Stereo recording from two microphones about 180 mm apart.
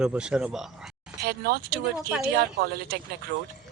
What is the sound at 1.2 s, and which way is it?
Speech, 60° right (ahead or behind).